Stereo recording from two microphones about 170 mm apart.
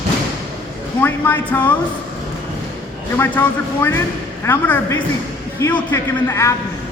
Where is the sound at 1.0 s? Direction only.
10° left (ahead or behind).